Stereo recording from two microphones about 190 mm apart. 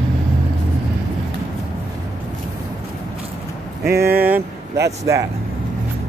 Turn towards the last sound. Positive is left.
turn(degrees=-15)  # may be behind; listen again after turning